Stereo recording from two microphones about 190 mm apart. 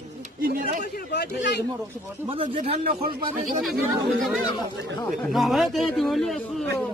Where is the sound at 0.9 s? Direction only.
60° left (ahead or behind).